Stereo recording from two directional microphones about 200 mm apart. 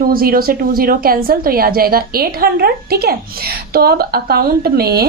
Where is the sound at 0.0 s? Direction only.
45° right (ahead or behind).